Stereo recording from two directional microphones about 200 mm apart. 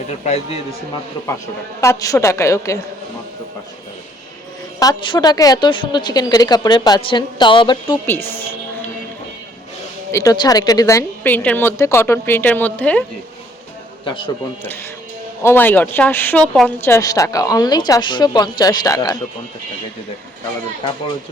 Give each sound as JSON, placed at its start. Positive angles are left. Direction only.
{"t": 0.1, "sound": "a man's voice", "side_deg": 35}
{"t": 1.8, "sound": "a woman's voice", "side_deg": 15}
{"t": 4.8, "sound": "a woman's voice", "side_deg": 20}
{"t": 8.0, "sound": "a woman's voice", "side_deg": 10}
{"t": 10.1, "sound": "a woman's voice", "side_deg": 15}
{"t": 14.0, "sound": "a man's voice", "side_deg": 25}
{"t": 15.4, "sound": "a woman's voice", "side_deg": 10}